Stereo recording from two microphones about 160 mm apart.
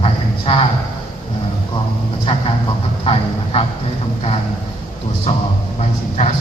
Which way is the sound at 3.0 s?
35° left (ahead or behind).